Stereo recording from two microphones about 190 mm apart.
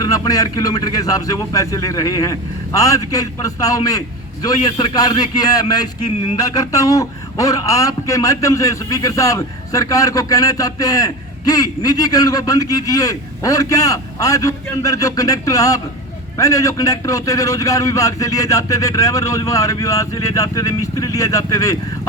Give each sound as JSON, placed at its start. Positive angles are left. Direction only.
{"t": 0.0, "sound": "a man's voice", "side_deg": 20}